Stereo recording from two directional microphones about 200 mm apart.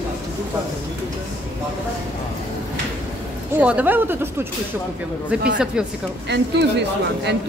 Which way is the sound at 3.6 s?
10° right (ahead or behind).